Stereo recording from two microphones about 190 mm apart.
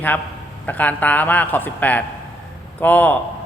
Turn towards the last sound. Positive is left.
turn(degrees=10)  # may be behind; listen again after turning